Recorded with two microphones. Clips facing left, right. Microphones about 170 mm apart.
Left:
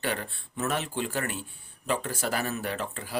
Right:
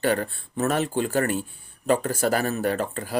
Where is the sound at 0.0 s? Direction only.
45° right (ahead or behind).